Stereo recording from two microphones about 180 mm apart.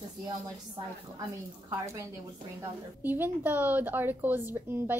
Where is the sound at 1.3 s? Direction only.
15° right (ahead or behind).